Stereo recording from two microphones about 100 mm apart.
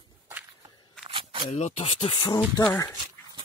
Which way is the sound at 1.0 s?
65° right (ahead or behind).